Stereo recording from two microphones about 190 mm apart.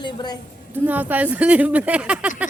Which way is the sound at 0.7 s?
10° right (ahead or behind).